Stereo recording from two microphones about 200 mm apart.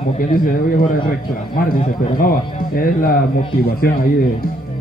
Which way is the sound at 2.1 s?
45° left (ahead or behind).